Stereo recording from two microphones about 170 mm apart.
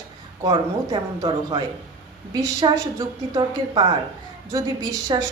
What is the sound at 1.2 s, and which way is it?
A woman's voice, 25° right (ahead or behind).